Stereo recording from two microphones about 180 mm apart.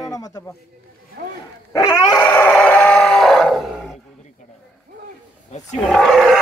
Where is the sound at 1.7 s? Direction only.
20° left (ahead or behind).